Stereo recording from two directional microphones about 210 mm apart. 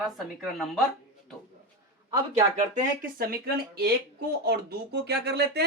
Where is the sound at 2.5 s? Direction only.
40° right (ahead or behind).